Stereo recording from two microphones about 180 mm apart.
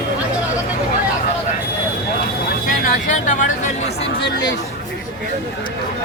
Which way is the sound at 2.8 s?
45° left (ahead or behind).